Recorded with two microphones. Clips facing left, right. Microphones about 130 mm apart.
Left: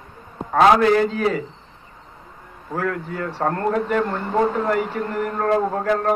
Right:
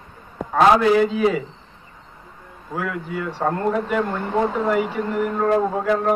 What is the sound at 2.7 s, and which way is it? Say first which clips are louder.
A man's voice: left 2 dB; 10° right (ahead or behind).